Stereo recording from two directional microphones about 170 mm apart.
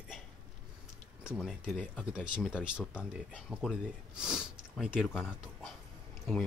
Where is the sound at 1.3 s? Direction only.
Centre (ahead or behind).